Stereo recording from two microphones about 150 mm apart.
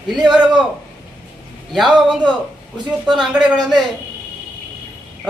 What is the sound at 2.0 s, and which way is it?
Speech, 5° right (ahead or behind).